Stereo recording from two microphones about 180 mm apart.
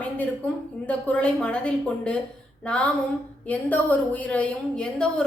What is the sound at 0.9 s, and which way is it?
Speech, 5° left (ahead or behind).